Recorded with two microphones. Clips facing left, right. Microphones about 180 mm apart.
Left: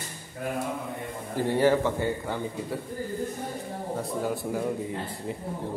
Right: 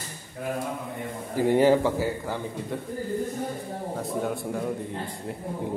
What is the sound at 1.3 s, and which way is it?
Speech, 15° right (ahead or behind).